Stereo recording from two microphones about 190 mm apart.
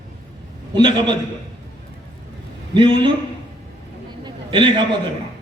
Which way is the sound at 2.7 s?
25° right (ahead or behind).